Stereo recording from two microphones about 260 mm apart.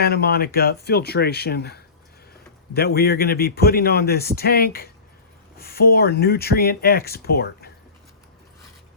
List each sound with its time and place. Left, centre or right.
0.0 s a man's voice: left